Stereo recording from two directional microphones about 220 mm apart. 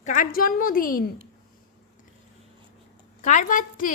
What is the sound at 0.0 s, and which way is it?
A woman's voice, 35° left (ahead or behind).